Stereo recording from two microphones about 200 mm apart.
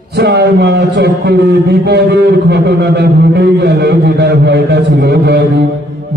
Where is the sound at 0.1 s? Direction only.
55° right (ahead or behind).